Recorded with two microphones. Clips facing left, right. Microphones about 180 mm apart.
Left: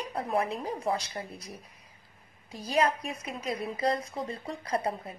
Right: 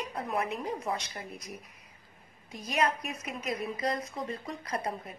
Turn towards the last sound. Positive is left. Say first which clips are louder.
# left 4 dB
turn(degrees=30)  # may be behind; listen again after turning